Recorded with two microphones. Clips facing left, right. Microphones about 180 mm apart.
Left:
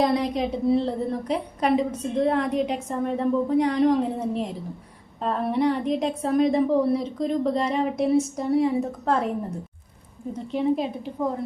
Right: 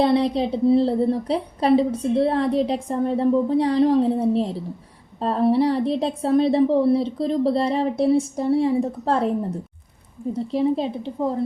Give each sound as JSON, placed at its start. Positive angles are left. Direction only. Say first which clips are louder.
{"t": 0.0, "sound": "a woman's voice", "louder": "right 4 dB", "side_deg": -30}
{"t": 10.3, "sound": "a woman's voice", "louder": "right 2 dB", "side_deg": -35}